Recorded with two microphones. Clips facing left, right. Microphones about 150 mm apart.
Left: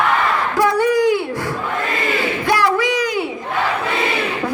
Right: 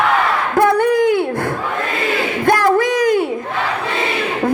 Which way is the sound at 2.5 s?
50° right (ahead or behind).